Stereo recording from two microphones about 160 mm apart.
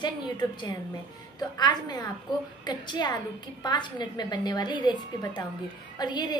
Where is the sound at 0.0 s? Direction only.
25° left (ahead or behind).